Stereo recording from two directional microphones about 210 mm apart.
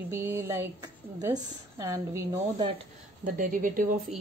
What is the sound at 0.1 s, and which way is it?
Speech, 10° right (ahead or behind).